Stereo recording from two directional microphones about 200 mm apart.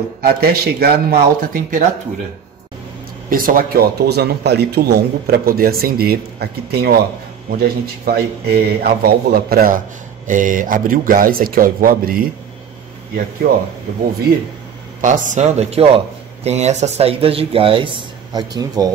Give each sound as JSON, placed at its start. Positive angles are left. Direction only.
{"t": 0.2, "sound": "a man's voice", "side_deg": -50}
{"t": 3.3, "sound": "a man's voice", "side_deg": -45}
{"t": 8.0, "sound": "a man's voice", "side_deg": -50}
{"t": 15.0, "sound": "speech", "side_deg": -40}